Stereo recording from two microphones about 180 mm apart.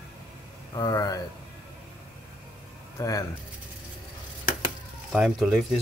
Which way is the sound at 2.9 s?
20° left (ahead or behind).